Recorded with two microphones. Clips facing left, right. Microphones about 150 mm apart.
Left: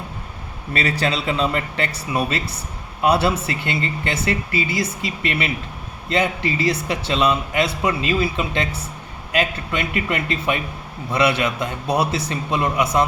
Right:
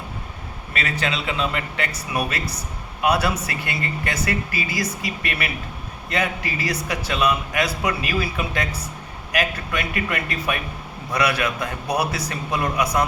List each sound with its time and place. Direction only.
0.7 s a man's voice: 35° left (ahead or behind)